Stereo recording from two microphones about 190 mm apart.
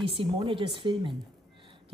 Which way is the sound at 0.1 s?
30° right (ahead or behind).